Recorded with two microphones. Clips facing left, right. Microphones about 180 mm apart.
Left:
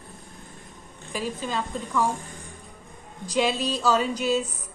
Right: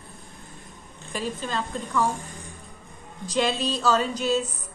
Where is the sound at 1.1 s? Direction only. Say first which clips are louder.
Even; 5° left (ahead or behind).